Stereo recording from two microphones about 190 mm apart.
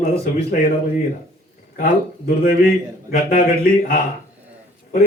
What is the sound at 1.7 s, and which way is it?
Speech, 50° left (ahead or behind).